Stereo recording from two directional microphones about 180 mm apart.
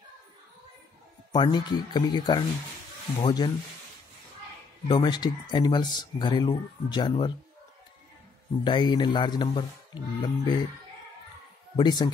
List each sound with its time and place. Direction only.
1.3 s speech: 25° left (ahead or behind)
4.8 s speech: 25° left (ahead or behind)
8.6 s speech: 25° left (ahead or behind)
11.7 s speech: 25° left (ahead or behind)